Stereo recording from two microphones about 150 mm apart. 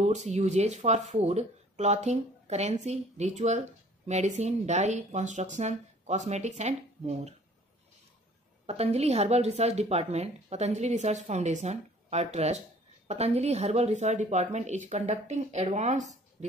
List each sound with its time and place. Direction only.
0.0 s speech: 50° right (ahead or behind)
8.6 s speech: 45° right (ahead or behind)